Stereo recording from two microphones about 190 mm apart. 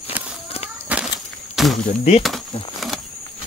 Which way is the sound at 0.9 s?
5° right (ahead or behind).